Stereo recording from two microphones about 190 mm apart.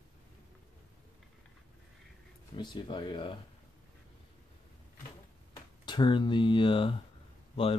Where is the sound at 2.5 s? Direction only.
25° left (ahead or behind).